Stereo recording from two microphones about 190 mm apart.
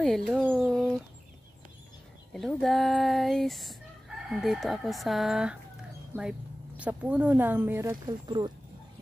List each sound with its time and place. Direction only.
0.0 s bird: centre (ahead or behind)
2.3 s speech: centre (ahead or behind)
8.3 s speech: 20° right (ahead or behind)